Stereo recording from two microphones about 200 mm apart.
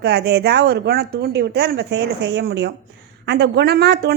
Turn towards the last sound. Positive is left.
turn(degrees=-55)  # may be behind; listen again after turning